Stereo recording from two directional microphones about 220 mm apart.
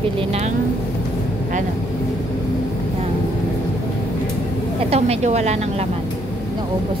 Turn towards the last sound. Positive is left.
turn(degrees=-30)  # may be behind; listen again after turning